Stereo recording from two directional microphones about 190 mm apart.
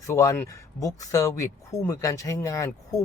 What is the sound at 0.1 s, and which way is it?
Speech, 15° left (ahead or behind).